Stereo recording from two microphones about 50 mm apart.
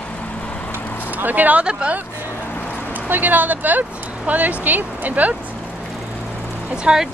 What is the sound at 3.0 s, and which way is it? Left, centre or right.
Speech, right.